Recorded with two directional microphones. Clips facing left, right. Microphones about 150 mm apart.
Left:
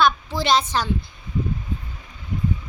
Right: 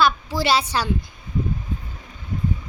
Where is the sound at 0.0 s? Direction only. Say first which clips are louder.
Even; 10° right (ahead or behind).